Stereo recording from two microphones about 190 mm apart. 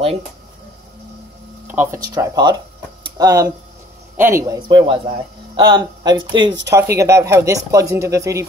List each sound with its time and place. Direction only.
1.7 s speech: 10° right (ahead or behind)
3.0 s a sound: 20° right (ahead or behind)
4.2 s a man's voice: 15° right (ahead or behind)